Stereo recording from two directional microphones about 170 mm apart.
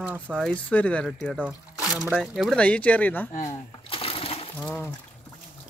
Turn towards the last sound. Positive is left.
turn(degrees=15)  # may be behind; listen again after turning